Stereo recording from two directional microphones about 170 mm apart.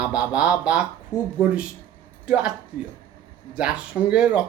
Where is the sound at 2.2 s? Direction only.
5° right (ahead or behind).